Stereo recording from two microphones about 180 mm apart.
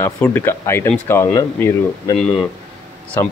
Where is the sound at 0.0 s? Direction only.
10° left (ahead or behind).